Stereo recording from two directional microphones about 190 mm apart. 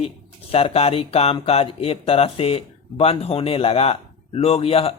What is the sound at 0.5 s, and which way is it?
Speech, 30° left (ahead or behind).